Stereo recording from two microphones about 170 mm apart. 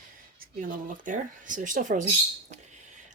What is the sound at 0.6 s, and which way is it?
Speech, 50° right (ahead or behind).